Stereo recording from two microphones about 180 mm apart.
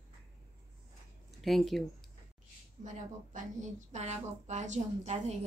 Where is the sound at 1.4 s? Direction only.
Centre (ahead or behind).